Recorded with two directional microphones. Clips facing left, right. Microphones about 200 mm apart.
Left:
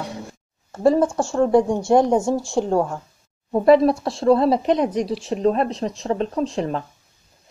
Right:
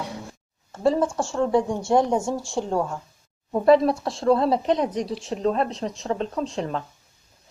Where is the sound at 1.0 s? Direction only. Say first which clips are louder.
Left 4 dB; 45° left (ahead or behind).